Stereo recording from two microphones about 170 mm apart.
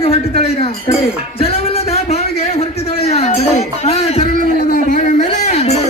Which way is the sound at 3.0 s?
40° left (ahead or behind).